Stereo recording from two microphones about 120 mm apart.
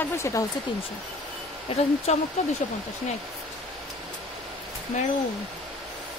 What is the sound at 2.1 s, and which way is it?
Speech, 65° left (ahead or behind).